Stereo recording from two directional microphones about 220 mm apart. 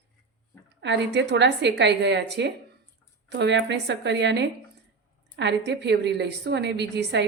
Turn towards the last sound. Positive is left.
turn(degrees=-50)  # may be behind; listen again after turning